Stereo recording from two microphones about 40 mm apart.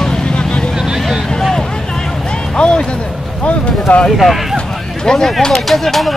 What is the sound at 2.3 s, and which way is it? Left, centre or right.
Music, left.